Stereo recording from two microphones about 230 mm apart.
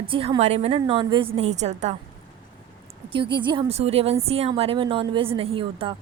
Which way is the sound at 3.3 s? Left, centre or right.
Centre.